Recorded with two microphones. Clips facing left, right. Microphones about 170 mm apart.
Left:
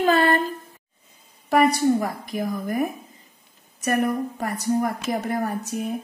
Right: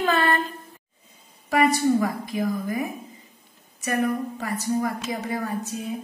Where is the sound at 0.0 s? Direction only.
35° left (ahead or behind).